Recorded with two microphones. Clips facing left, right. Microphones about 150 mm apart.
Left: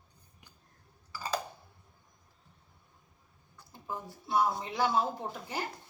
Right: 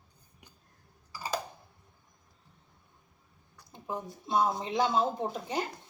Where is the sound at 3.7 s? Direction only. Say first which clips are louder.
Right 3 dB; 20° right (ahead or behind).